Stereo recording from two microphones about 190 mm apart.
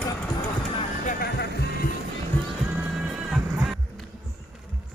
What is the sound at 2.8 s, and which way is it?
Music, 10° right (ahead or behind).